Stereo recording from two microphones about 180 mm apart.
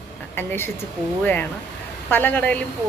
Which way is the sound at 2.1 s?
10° left (ahead or behind).